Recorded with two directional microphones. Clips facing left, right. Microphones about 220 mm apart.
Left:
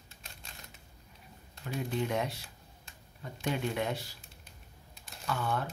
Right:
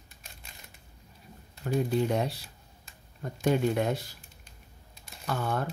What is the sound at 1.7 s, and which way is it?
Speech, 40° right (ahead or behind).